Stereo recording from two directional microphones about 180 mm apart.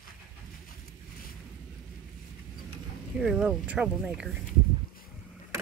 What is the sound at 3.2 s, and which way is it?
Speech, 5° right (ahead or behind).